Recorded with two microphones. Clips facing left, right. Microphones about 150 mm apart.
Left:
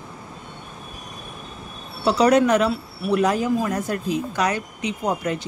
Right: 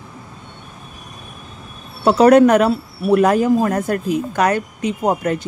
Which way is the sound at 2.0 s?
50° right (ahead or behind).